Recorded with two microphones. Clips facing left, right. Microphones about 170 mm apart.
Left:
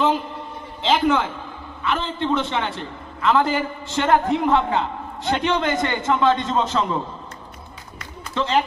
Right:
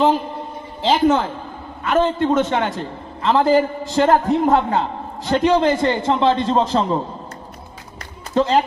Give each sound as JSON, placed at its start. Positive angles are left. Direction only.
{"t": 0.8, "sound": "a man's voice", "side_deg": -40}
{"t": 8.4, "sound": "a man's voice", "side_deg": -40}